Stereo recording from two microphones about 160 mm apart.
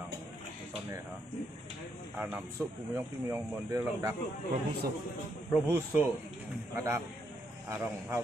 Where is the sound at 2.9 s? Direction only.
15° right (ahead or behind).